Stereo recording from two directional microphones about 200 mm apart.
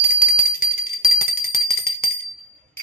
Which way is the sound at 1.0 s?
50° left (ahead or behind).